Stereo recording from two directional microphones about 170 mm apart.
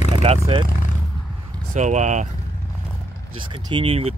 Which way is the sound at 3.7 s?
35° right (ahead or behind).